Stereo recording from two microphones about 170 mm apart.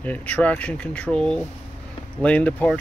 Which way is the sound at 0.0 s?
10° left (ahead or behind).